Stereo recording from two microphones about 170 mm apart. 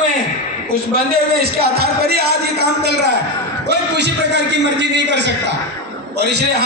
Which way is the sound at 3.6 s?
90° right.